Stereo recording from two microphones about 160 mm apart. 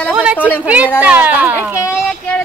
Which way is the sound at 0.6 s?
10° right (ahead or behind).